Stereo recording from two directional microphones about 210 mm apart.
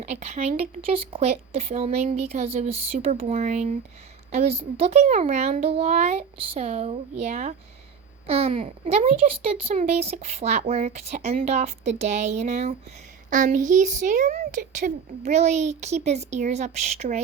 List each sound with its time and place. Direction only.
0.1 s a child's voice: 30° right (ahead or behind)